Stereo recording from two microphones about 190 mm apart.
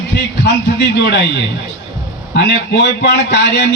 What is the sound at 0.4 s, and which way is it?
Speech, 70° left (ahead or behind).